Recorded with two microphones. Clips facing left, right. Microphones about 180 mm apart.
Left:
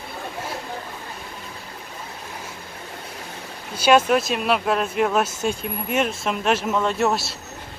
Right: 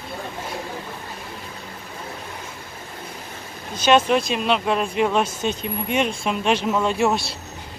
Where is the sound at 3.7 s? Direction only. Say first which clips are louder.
Even; 10° left (ahead or behind).